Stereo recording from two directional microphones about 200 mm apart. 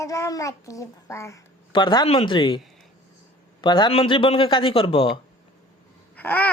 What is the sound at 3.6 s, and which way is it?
A child's voice, 25° left (ahead or behind).